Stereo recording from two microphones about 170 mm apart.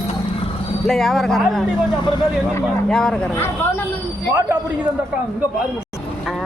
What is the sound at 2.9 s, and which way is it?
Speech, 5° left (ahead or behind).